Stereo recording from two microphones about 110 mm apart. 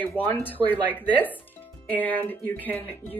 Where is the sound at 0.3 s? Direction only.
15° left (ahead or behind).